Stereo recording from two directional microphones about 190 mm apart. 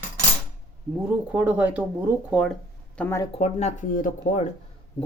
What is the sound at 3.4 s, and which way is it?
Speech, 35° left (ahead or behind).